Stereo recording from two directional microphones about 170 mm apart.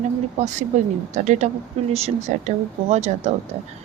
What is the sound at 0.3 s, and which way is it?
Speech, 45° right (ahead or behind).